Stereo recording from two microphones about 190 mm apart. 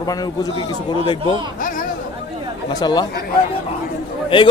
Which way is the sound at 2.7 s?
20° left (ahead or behind).